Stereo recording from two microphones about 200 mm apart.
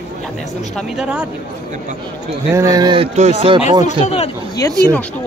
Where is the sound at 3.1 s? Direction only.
30° right (ahead or behind).